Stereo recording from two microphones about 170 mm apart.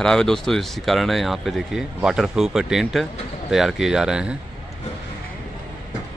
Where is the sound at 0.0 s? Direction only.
5° left (ahead or behind).